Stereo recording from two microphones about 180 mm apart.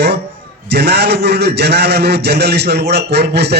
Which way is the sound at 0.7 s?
65° right (ahead or behind).